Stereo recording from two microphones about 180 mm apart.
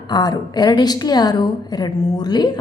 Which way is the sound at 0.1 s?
20° left (ahead or behind).